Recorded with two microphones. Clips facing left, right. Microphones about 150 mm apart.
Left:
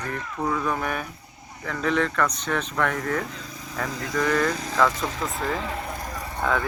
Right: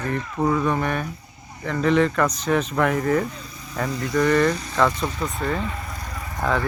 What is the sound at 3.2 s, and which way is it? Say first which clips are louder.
Speech: right 4 dB; 90° left.